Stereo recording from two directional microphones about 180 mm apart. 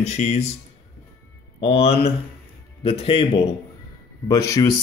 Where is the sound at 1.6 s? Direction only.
35° left (ahead or behind).